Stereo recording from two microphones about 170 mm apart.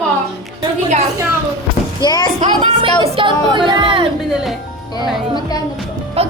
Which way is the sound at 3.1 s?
30° right (ahead or behind).